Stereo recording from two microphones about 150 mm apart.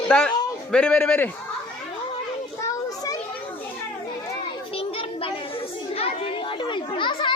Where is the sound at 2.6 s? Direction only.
20° left (ahead or behind).